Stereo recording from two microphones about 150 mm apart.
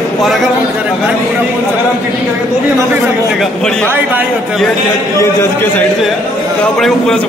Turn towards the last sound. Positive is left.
turn(degrees=5)  # may be behind; listen again after turning